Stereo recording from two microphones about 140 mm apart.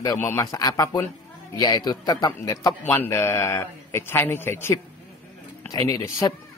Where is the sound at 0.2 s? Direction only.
20° left (ahead or behind).